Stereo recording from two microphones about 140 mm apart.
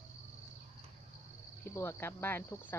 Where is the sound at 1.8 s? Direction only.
20° left (ahead or behind).